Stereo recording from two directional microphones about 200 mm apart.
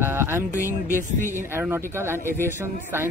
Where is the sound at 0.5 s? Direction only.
15° left (ahead or behind).